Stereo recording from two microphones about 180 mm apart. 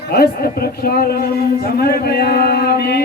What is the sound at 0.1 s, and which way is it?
Speech, 60° left (ahead or behind).